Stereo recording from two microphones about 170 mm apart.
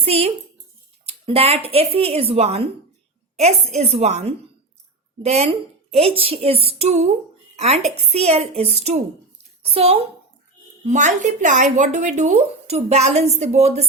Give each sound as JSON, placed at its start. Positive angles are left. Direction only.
{"t": 0.0, "sound": "speech", "side_deg": -35}